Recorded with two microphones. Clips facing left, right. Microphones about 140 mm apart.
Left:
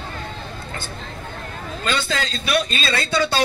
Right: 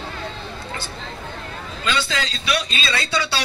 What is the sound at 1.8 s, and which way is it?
A man's voice, 50° left (ahead or behind).